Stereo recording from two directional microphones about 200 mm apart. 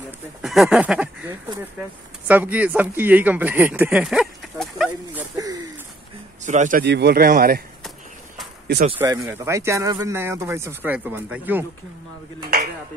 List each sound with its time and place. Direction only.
0.4 s speech: centre (ahead or behind)
2.2 s speech: 10° right (ahead or behind)
6.4 s speech: 40° right (ahead or behind)
6.8 s speech: 55° right (ahead or behind)
9.0 s speech: 15° right (ahead or behind)